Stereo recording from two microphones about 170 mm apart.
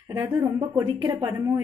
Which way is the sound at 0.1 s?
20° right (ahead or behind).